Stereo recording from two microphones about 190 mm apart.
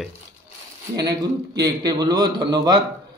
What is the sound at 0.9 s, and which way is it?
A man's voice, 20° right (ahead or behind).